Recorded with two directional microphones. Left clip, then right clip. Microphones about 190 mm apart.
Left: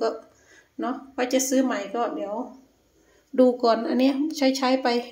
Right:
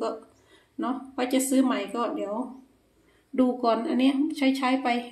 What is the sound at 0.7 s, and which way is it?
A woman's voice, 10° left (ahead or behind).